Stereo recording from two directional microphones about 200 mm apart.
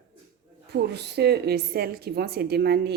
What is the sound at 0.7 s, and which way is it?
A woman's voice, 55° right (ahead or behind).